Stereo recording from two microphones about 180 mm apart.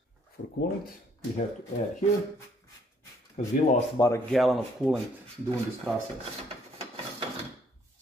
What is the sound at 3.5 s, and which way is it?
Speech, 40° left (ahead or behind).